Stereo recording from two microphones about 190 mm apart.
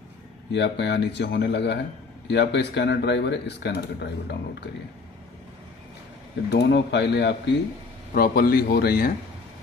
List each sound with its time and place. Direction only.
0.5 s speech: 65° left (ahead or behind)
6.5 s speech: 65° left (ahead or behind)
8.1 s speech: 50° left (ahead or behind)